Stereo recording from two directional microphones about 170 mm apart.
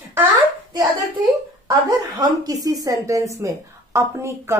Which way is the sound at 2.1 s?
20° right (ahead or behind).